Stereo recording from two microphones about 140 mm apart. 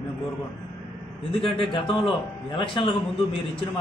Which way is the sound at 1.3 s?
40° left (ahead or behind).